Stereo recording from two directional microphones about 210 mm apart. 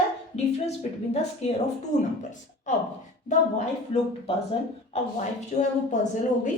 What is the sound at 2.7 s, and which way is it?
Speech, 35° left (ahead or behind).